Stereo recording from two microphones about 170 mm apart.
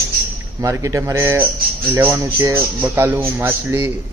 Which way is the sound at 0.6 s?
20° right (ahead or behind).